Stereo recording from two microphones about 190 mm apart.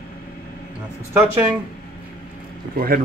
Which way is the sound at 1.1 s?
10° right (ahead or behind).